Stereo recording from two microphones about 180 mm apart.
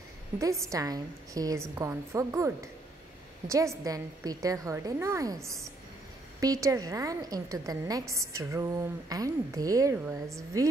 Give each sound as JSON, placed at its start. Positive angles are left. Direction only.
{"t": 0.7, "sound": "a woman's voice", "side_deg": -20}